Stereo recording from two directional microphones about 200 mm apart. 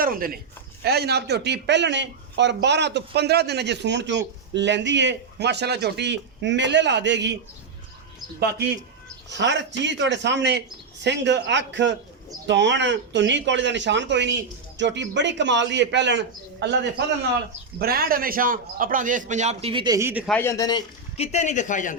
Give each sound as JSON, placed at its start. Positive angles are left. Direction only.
{"t": 0.0, "sound": "a man's voice", "side_deg": -45}
{"t": 8.4, "sound": "a man's voice", "side_deg": -55}
{"t": 17.7, "sound": "a man's voice", "side_deg": -50}
{"t": 20.2, "sound": "speech", "side_deg": 10}
{"t": 21.2, "sound": "speech", "side_deg": 35}